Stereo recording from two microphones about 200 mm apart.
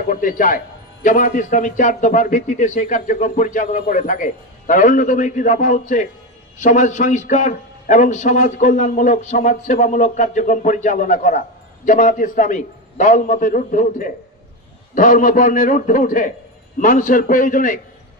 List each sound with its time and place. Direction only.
0.0 s a man's voice: 45° left (ahead or behind)